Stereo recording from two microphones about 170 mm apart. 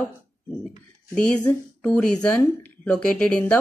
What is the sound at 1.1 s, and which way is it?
Speech, 10° left (ahead or behind).